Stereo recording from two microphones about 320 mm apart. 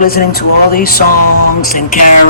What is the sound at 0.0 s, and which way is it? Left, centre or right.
Speech, left.